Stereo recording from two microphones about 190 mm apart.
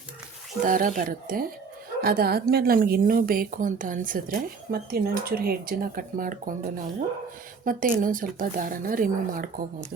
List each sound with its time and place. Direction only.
0.6 s a woman's voice: 45° right (ahead or behind)